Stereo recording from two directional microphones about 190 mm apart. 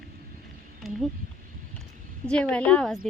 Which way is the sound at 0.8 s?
Centre (ahead or behind).